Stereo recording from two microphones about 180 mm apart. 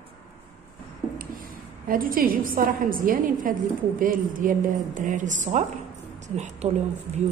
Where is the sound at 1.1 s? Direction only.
50° right (ahead or behind).